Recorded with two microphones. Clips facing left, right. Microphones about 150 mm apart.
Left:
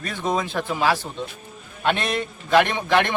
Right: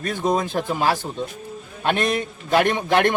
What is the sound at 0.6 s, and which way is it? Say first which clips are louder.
Speech: right 1 dB; 45° right (ahead or behind).